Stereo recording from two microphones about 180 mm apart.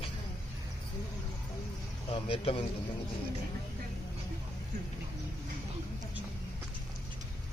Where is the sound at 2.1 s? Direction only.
30° left (ahead or behind).